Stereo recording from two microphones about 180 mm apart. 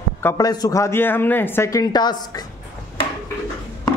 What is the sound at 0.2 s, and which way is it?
Speech, 15° left (ahead or behind).